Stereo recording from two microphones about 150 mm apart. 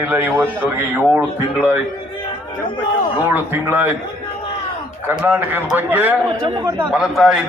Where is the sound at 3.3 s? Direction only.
15° right (ahead or behind).